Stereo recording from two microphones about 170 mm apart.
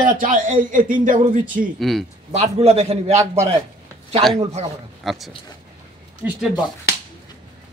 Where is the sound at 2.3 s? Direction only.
40° right (ahead or behind).